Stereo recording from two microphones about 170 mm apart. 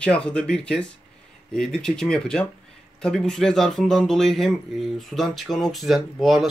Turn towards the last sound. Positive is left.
turn(degrees=0)  # may be behind; listen again after turning